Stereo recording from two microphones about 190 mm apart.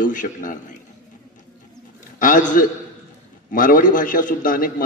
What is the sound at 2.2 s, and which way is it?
A man's voice, 45° left (ahead or behind).